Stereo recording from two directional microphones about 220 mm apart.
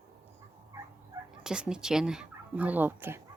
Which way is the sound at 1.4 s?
5° right (ahead or behind).